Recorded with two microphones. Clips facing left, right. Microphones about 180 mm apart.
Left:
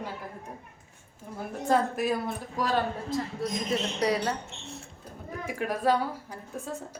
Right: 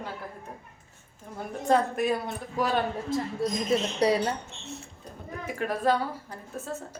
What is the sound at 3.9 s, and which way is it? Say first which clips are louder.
Speech: right 3 dB; 30° right (ahead or behind).